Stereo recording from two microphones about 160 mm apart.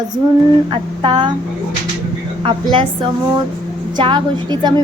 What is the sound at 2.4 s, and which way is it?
Speech, 30° right (ahead or behind).